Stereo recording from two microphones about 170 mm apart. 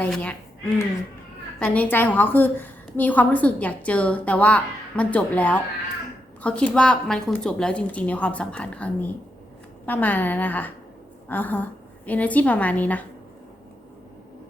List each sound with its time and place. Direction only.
0.0 s a woman's voice: 10° left (ahead or behind)
1.5 s a woman's voice: 10° left (ahead or behind)